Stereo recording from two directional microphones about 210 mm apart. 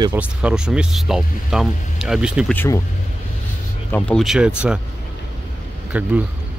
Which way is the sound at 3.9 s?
Centre (ahead or behind).